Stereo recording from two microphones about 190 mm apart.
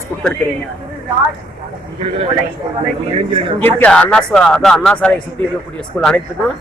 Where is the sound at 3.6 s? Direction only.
5° left (ahead or behind).